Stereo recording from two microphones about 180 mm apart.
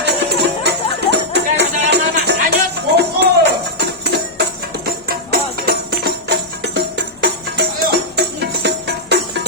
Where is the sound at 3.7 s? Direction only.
70° right (ahead or behind).